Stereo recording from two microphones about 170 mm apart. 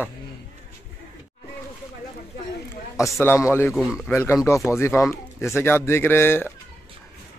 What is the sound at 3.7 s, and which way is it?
Speech, 5° right (ahead or behind).